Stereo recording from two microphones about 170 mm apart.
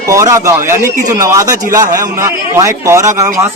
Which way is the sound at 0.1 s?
15° right (ahead or behind).